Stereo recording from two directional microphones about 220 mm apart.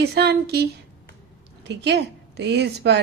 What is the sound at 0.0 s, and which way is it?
A woman's voice, 50° right (ahead or behind).